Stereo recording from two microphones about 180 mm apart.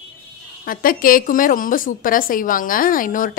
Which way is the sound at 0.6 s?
50° left (ahead or behind).